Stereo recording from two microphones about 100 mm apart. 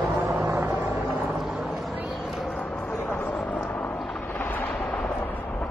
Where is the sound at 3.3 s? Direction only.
10° left (ahead or behind).